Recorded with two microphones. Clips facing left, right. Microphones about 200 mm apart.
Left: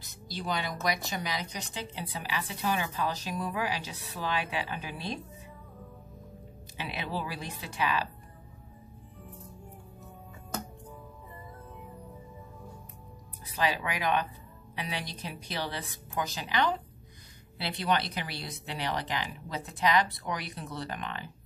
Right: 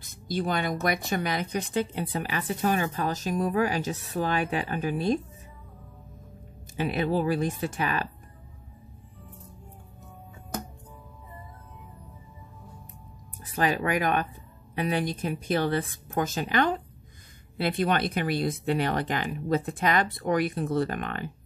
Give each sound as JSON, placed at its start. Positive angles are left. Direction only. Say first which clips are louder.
{"t": 0.0, "sound": "speech", "louder": "right 9 dB", "side_deg": -50}
{"t": 6.8, "sound": "speech", "louder": "right 10 dB", "side_deg": -50}
{"t": 13.5, "sound": "speech", "louder": "right 5 dB", "side_deg": -50}